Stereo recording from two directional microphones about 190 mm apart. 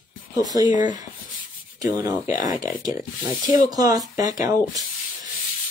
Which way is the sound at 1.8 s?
20° right (ahead or behind).